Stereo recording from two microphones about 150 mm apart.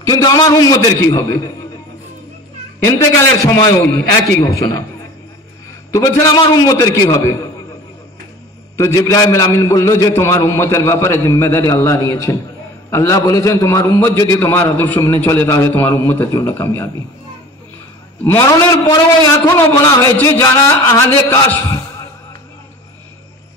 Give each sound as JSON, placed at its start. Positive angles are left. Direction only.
{"t": 0.0, "sound": "a man's voice", "side_deg": 25}
{"t": 2.8, "sound": "a man's voice", "side_deg": 20}
{"t": 5.9, "sound": "a man's voice", "side_deg": 20}
{"t": 8.7, "sound": "a man's voice", "side_deg": 20}
{"t": 18.2, "sound": "a man's voice", "side_deg": 20}